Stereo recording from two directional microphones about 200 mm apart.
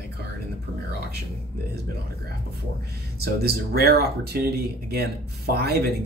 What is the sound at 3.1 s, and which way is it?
Speech, 50° right (ahead or behind).